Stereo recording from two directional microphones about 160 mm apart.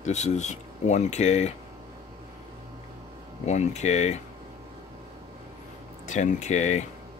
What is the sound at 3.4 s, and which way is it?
Speech, 45° left (ahead or behind).